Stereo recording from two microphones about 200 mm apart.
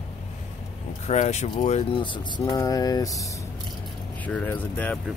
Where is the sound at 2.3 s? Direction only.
15° left (ahead or behind).